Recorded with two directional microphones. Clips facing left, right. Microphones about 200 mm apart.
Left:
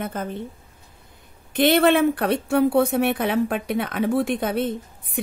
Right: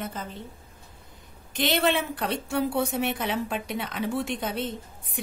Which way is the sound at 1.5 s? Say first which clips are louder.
Left 8 dB; 55° left (ahead or behind).